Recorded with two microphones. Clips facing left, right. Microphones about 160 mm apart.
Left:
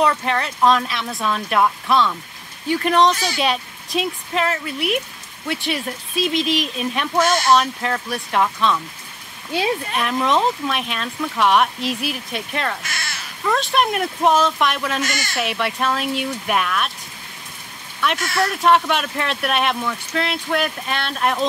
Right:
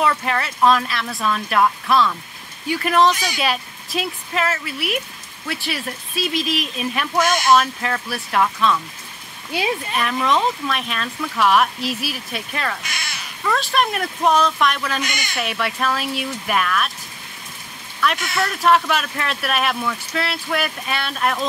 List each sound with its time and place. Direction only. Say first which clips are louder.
0.0 s speech: left 1 dB; 5° right (ahead or behind)
7.6 s speech: left 1 dB; centre (ahead or behind)
9.9 s speech: even; centre (ahead or behind)
12.8 s cat: left 1 dB; 15° right (ahead or behind)
13.4 s speech: left 1 dB; centre (ahead or behind)
15.0 s speech: left 2 dB; 15° right (ahead or behind)
15.3 s speech: left 1 dB; centre (ahead or behind)
18.3 s speech: left 1 dB; centre (ahead or behind)